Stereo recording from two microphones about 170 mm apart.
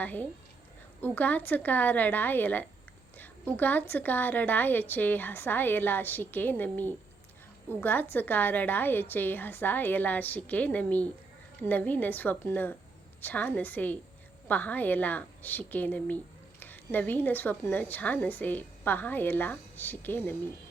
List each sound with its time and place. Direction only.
0.0 s a woman's voice: 10° left (ahead or behind)